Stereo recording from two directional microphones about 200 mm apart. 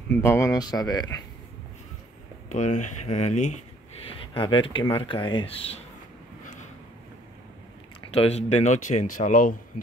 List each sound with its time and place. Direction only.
0.1 s speech: 15° left (ahead or behind)
2.5 s speech: 35° left (ahead or behind)
4.1 s speech: 25° left (ahead or behind)
6.4 s vehicle: 35° left (ahead or behind)
8.1 s speech: 30° left (ahead or behind)